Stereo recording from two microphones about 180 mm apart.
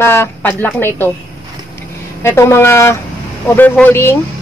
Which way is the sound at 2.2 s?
15° left (ahead or behind).